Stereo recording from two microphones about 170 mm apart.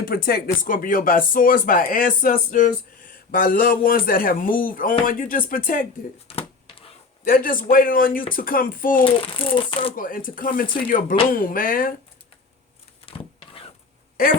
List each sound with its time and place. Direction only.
0.0 s speech: 60° left (ahead or behind)
6.2 s a sound: 35° left (ahead or behind)
7.3 s speech: 55° left (ahead or behind)
9.0 s speech: 30° left (ahead or behind)
9.9 s speech: 55° left (ahead or behind)
13.1 s power windows: 35° left (ahead or behind)